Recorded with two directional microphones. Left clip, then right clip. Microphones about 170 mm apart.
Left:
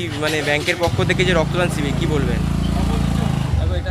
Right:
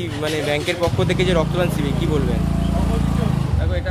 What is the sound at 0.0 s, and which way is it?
Speech, centre (ahead or behind).